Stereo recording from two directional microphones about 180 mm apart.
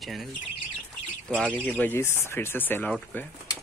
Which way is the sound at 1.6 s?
10° left (ahead or behind).